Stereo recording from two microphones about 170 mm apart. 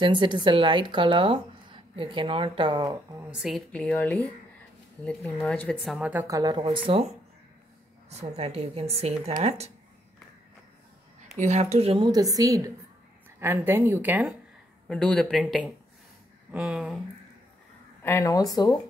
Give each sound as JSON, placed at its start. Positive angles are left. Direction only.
{"t": 0.0, "sound": "a woman's voice", "side_deg": -25}
{"t": 3.3, "sound": "speech", "side_deg": 0}
{"t": 6.2, "sound": "a woman's voice", "side_deg": -20}
{"t": 8.1, "sound": "speech", "side_deg": -40}
{"t": 11.3, "sound": "speech", "side_deg": -40}
{"t": 12.1, "sound": "a woman's voice", "side_deg": -20}
{"t": 14.9, "sound": "speech", "side_deg": 5}
{"t": 18.0, "sound": "speech", "side_deg": 15}